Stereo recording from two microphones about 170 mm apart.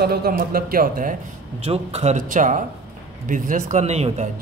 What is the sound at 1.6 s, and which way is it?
Speech, 35° right (ahead or behind).